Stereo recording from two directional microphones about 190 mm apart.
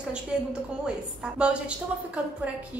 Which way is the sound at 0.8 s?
5° right (ahead or behind).